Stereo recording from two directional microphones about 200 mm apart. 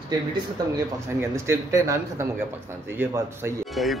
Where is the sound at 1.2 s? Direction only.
15° right (ahead or behind).